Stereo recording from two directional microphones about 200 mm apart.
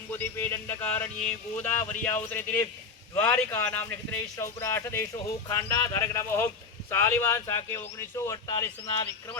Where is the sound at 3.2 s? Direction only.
10° left (ahead or behind).